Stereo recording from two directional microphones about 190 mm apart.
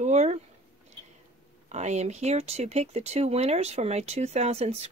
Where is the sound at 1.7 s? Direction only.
35° right (ahead or behind).